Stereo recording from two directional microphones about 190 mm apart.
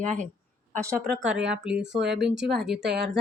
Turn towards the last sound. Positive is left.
turn(degrees=0)  # may be behind; listen again after turning